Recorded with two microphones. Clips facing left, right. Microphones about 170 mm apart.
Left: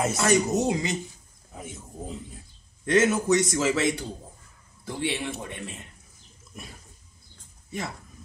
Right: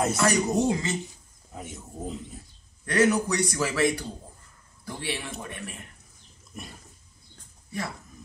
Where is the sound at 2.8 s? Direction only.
25° left (ahead or behind).